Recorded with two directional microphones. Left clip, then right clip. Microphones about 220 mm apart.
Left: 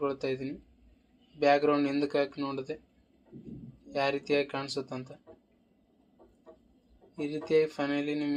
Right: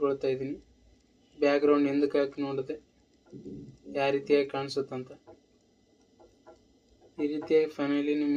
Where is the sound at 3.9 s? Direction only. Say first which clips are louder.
Right 3 dB; 30° left (ahead or behind).